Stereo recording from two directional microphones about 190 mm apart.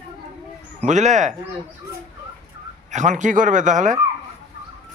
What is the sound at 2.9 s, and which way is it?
Speech, 40° right (ahead or behind).